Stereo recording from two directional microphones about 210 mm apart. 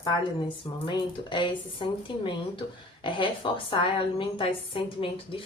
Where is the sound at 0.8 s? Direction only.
20° left (ahead or behind).